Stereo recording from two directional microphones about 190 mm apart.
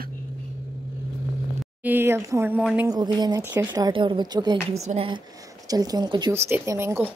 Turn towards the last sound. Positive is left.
turn(degrees=-15)  # may be behind; listen again after turning